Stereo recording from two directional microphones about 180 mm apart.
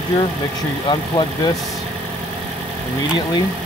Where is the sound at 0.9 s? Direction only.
25° left (ahead or behind).